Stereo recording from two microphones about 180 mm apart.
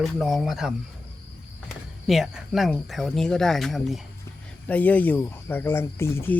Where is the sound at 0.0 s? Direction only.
Centre (ahead or behind).